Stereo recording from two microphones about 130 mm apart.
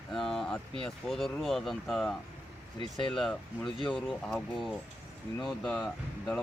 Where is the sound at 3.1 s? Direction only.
Centre (ahead or behind).